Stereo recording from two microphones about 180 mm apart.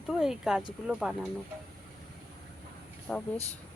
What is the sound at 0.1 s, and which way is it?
Speech, 5° right (ahead or behind).